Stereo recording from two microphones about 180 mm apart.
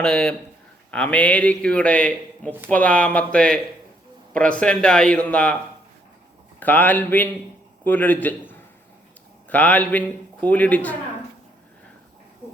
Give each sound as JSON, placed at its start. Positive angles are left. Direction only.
{"t": 0.0, "sound": "a man's voice", "side_deg": 5}
{"t": 6.6, "sound": "a man's voice", "side_deg": 10}